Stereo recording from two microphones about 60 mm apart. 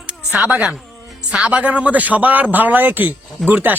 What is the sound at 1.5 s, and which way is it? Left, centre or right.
A man's voice, right.